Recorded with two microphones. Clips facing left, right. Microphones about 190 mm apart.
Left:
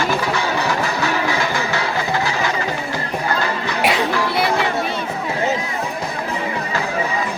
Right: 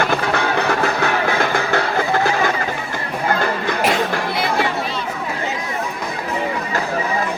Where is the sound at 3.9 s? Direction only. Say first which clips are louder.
Left 1 dB; 50° right (ahead or behind).